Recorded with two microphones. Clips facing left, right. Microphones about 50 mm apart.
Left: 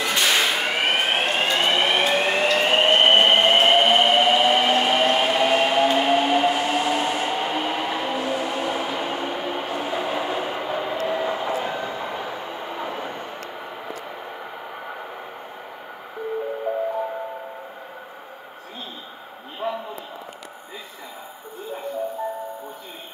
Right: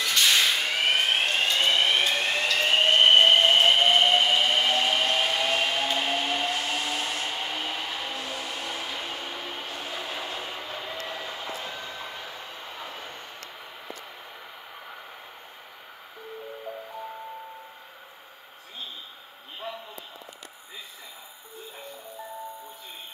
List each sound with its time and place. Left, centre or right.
0.0 s whip: left
2.2 s train: left